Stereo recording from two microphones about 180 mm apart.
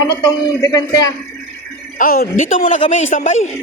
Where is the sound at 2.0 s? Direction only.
50° left (ahead or behind).